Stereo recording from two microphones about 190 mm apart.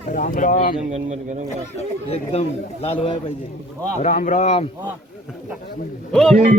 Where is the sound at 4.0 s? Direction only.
40° left (ahead or behind).